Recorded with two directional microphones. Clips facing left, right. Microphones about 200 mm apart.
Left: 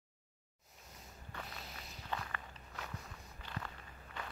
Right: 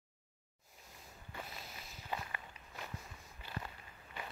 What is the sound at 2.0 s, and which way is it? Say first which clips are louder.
Walk: even; 15° right (ahead or behind).